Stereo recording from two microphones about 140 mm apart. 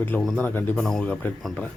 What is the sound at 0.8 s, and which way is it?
Speech, centre (ahead or behind).